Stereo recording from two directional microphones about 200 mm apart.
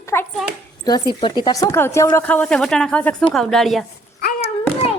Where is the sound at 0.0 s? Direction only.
10° left (ahead or behind).